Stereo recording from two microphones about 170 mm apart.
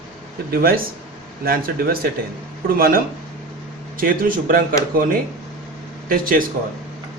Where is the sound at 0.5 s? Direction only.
60° right (ahead or behind).